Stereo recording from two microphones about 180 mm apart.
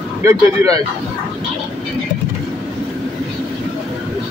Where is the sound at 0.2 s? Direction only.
15° right (ahead or behind).